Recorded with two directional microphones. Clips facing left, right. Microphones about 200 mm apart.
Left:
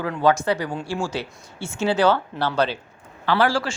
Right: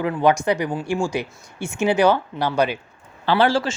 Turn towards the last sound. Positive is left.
turn(degrees=-20)  # may be behind; listen again after turning